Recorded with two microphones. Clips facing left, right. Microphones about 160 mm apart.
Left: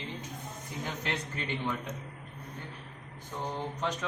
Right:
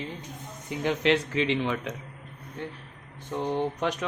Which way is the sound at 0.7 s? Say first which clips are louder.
Right 12 dB; 80° right.